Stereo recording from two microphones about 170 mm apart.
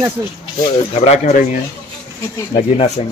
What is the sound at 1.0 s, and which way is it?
Speech, 40° left (ahead or behind).